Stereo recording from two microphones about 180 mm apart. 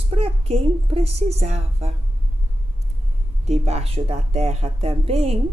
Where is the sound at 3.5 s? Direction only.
35° right (ahead or behind).